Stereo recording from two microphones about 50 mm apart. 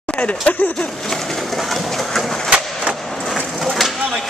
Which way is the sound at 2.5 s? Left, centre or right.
Centre.